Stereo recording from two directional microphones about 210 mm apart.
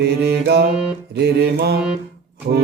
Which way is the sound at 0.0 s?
50° right (ahead or behind).